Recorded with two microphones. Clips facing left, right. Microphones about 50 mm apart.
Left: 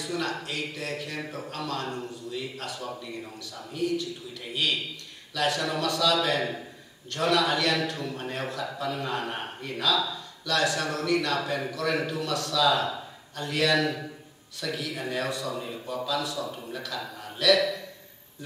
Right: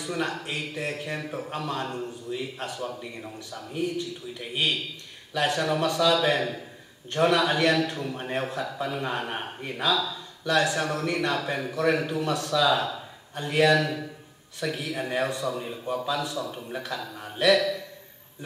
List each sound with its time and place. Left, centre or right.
0.0 s a man's voice: right
15.5 s a man's voice: centre
15.9 s a man's voice: right
17.2 s a sound: right